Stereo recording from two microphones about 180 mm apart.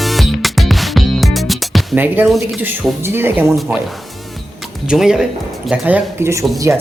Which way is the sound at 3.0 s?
10° right (ahead or behind).